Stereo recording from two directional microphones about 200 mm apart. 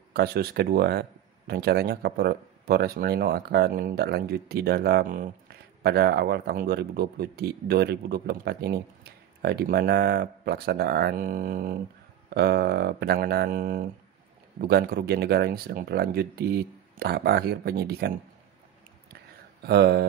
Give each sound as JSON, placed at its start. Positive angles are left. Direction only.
{"t": 0.1, "sound": "speech", "side_deg": -50}
{"t": 19.6, "sound": "speech", "side_deg": -55}